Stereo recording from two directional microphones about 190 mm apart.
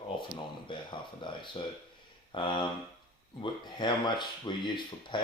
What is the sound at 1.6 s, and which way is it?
Speech, 25° left (ahead or behind).